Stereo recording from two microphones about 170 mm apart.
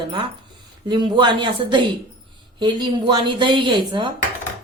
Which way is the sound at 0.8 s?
25° right (ahead or behind).